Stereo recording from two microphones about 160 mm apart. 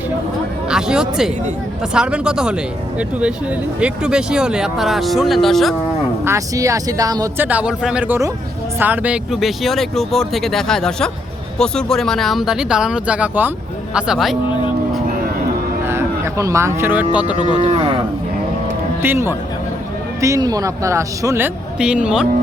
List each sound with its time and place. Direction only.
0.7 s speech: 5° right (ahead or behind)
3.8 s speech: 5° right (ahead or behind)
6.2 s speech: 20° right (ahead or behind)
7.4 s speech: 10° right (ahead or behind)
15.9 s speech: 15° right (ahead or behind)
17.6 s speech: 35° right (ahead or behind)
19.0 s speech: 15° right (ahead or behind)